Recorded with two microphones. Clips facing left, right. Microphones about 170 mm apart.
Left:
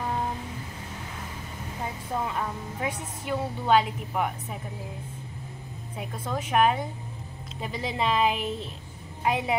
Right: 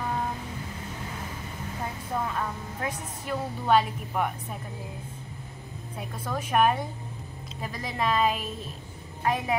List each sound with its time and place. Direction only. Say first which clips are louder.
2.2 s a woman's voice: left 1 dB; 10° left (ahead or behind)
5.9 s a woman's voice: left 1 dB; 5° left (ahead or behind)
7.6 s a woman's voice: left 1 dB; 20° left (ahead or behind)